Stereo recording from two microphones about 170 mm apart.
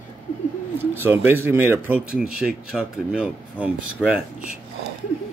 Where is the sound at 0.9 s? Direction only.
10° right (ahead or behind).